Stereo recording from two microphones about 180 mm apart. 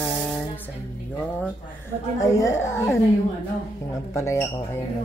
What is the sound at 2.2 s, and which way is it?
Dishes, 15° left (ahead or behind).